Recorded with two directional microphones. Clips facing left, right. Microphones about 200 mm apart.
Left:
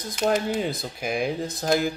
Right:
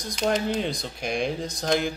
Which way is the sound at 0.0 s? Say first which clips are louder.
Left 1 dB; 5° left (ahead or behind).